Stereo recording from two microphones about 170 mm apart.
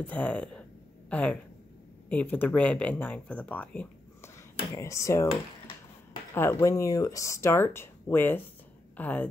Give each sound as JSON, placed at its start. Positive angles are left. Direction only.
{"t": 0.0, "sound": "speech", "side_deg": 10}
{"t": 6.3, "sound": "speech", "side_deg": 15}